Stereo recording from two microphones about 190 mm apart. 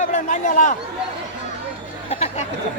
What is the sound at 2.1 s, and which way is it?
Speech, 35° left (ahead or behind).